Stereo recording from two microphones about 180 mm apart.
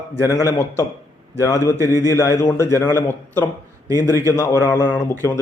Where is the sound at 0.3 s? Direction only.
15° left (ahead or behind).